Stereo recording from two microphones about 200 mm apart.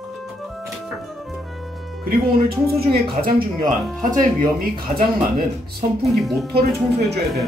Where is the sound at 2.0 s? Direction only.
50° right (ahead or behind).